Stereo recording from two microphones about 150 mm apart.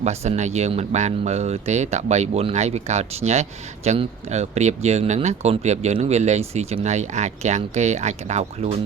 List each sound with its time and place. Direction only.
0.0 s speech: 45° right (ahead or behind)